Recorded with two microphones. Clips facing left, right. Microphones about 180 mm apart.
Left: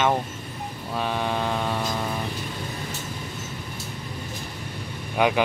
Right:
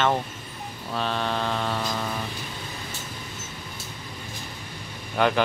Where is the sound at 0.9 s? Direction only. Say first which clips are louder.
Left 1 dB; 10° left (ahead or behind).